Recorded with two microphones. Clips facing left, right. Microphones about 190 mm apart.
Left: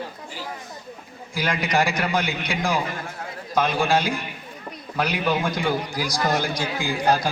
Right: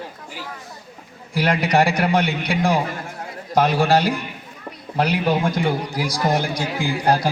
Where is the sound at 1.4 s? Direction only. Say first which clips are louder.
Right 5 dB; 35° right (ahead or behind).